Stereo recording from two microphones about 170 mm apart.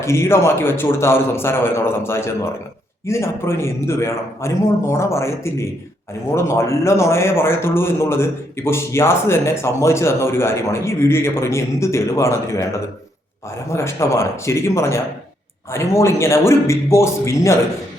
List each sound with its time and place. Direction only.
0.0 s a man's voice: 15° left (ahead or behind)
13.7 s a man's voice: 15° left (ahead or behind)